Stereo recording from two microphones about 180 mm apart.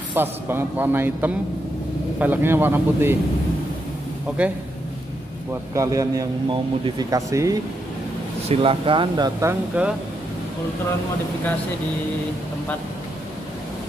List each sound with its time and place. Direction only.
0.1 s a man's voice: 10° right (ahead or behind)
5.5 s speech: 20° right (ahead or behind)
8.5 s speech: 30° right (ahead or behind); by 9.9 s 10° right (ahead or behind)